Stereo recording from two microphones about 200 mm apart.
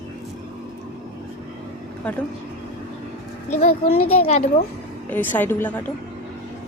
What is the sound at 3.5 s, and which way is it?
Speech, 35° left (ahead or behind).